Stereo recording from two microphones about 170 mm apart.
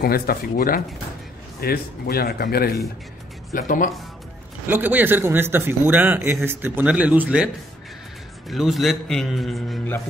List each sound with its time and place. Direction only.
0.0 s speech: 60° left (ahead or behind)
3.5 s speech: 50° left (ahead or behind)
4.6 s a man's voice: 10° right (ahead or behind)
8.5 s a man's voice: centre (ahead or behind)